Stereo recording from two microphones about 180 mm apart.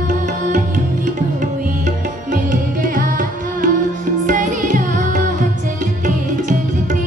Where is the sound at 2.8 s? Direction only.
50° right (ahead or behind).